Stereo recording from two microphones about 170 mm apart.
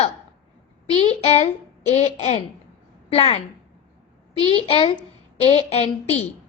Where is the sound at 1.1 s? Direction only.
35° left (ahead or behind).